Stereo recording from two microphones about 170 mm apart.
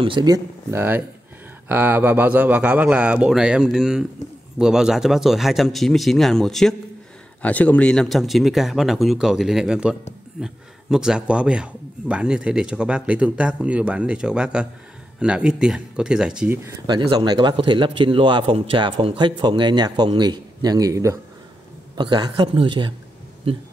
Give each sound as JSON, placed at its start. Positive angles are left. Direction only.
{"t": 0.0, "sound": "a man's voice", "side_deg": -25}
{"t": 16.8, "sound": "a man's voice", "side_deg": -25}